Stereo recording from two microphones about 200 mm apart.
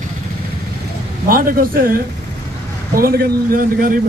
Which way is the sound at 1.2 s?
45° right (ahead or behind).